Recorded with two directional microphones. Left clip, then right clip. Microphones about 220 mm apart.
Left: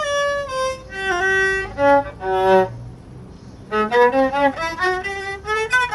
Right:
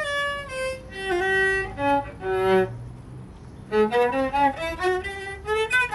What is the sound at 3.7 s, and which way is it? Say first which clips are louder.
Violin: left 5 dB; 15° left (ahead or behind).